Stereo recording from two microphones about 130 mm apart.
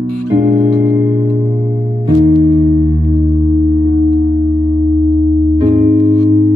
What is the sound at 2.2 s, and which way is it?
Music, 35° right (ahead or behind).